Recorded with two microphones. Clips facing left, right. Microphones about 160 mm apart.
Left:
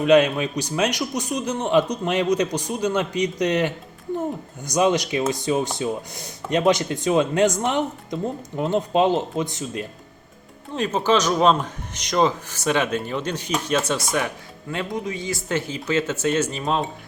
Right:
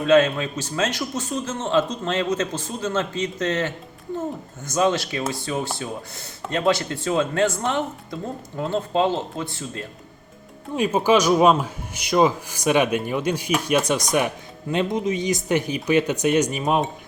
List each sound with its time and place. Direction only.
0.0 s speech: 15° left (ahead or behind)
10.8 s speech: 10° right (ahead or behind)